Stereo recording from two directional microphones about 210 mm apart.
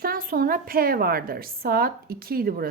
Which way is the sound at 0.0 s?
45° right (ahead or behind).